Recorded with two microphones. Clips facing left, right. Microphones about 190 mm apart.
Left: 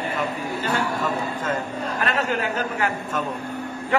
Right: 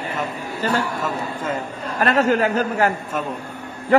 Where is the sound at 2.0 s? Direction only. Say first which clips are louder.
Right 8 dB; 40° right (ahead or behind).